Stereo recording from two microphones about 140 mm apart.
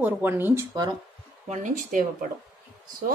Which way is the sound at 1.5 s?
65° right (ahead or behind).